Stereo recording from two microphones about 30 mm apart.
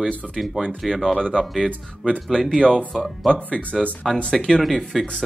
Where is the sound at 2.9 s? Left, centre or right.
Centre.